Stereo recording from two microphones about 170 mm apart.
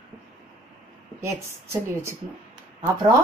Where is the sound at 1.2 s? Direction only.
15° right (ahead or behind).